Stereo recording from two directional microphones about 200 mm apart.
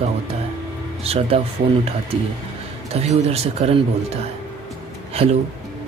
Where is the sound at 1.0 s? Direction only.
30° right (ahead or behind).